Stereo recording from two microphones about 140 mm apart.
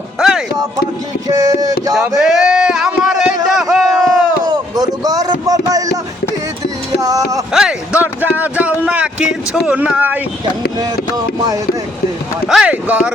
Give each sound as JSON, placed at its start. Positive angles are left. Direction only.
{"t": 0.2, "sound": "music", "side_deg": 0}
{"t": 1.3, "sound": "music", "side_deg": -25}
{"t": 2.0, "sound": "a sound", "side_deg": -5}
{"t": 4.4, "sound": "a sound", "side_deg": -25}
{"t": 7.0, "sound": "music", "side_deg": -25}
{"t": 7.5, "sound": "speech", "side_deg": -5}
{"t": 12.5, "sound": "speech", "side_deg": -5}